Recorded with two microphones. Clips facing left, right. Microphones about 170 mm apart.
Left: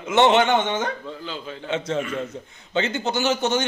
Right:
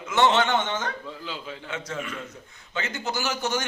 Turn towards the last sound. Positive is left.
turn(degrees=25)  # may be behind; listen again after turning